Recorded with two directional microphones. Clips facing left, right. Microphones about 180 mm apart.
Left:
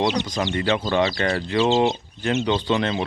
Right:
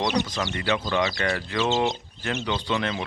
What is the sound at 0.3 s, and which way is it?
Speech, 25° left (ahead or behind).